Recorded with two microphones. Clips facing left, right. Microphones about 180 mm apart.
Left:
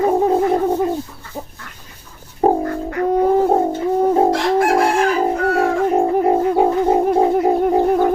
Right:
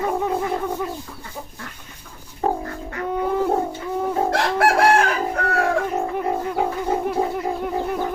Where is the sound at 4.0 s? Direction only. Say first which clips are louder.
Left 7 dB; 40° left (ahead or behind).